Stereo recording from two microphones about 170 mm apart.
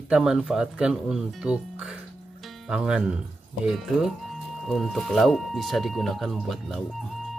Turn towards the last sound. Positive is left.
turn(degrees=0)  # may be behind; listen again after turning